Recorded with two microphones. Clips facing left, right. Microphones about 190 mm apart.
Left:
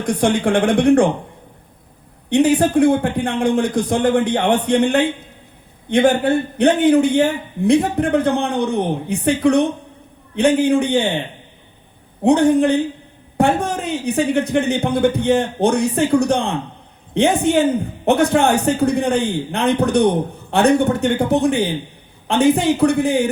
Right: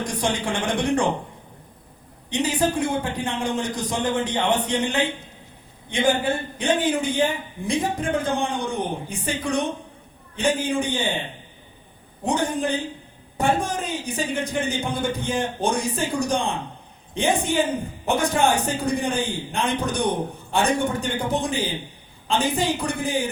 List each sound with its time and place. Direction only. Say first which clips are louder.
0.0 s a man's voice: left 8 dB; 55° left (ahead or behind)
2.3 s a man's voice: left 9 dB; 55° left (ahead or behind)
12.2 s a man's voice: left 11 dB; 65° left (ahead or behind)